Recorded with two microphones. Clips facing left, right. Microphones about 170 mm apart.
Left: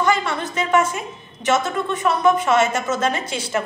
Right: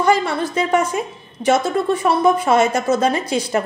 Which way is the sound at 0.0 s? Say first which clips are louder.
Right 4 dB; 35° right (ahead or behind).